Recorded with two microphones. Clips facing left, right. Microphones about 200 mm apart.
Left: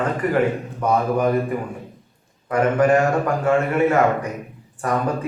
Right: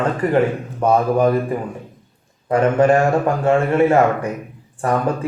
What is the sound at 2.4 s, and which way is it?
A man's voice, 30° right (ahead or behind).